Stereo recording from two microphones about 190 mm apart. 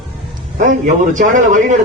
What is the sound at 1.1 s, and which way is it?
Speech, 40° right (ahead or behind).